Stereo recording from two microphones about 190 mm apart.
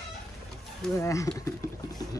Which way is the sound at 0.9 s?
15° left (ahead or behind).